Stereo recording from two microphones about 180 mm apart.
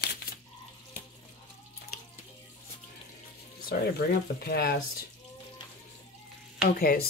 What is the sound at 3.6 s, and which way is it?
Speech, 60° left (ahead or behind).